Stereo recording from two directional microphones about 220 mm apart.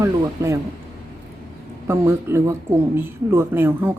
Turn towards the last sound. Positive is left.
turn(degrees=-10)  # may be behind; listen again after turning